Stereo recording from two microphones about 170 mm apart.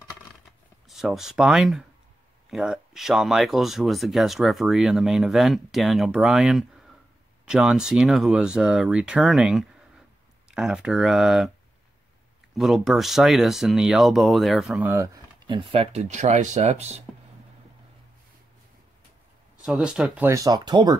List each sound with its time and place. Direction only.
0.8 s speech: centre (ahead or behind)
12.5 s speech: centre (ahead or behind)
15.4 s speech: 30° right (ahead or behind)
19.6 s speech: 5° right (ahead or behind)
20.2 s speech: 20° right (ahead or behind)